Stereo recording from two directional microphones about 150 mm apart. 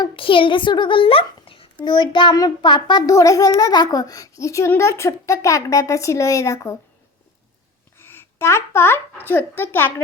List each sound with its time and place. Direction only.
0.0 s a child's voice: 35° left (ahead or behind)
7.9 s speech: 15° left (ahead or behind)